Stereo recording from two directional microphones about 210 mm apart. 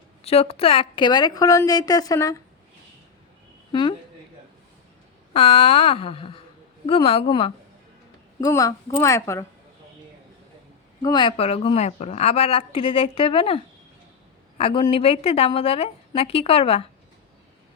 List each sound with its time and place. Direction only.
0.2 s speech: 30° left (ahead or behind)
3.7 s speech: 25° left (ahead or behind)
5.3 s speech: 30° left (ahead or behind)
8.4 s a woman's voice: 15° left (ahead or behind)
11.0 s speech: 20° left (ahead or behind)
14.6 s speech: 25° left (ahead or behind)